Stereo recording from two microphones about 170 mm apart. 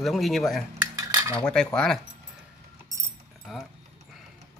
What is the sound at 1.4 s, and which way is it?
Speech, 5° left (ahead or behind).